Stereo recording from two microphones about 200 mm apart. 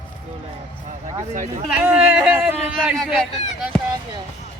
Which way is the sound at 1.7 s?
5° right (ahead or behind).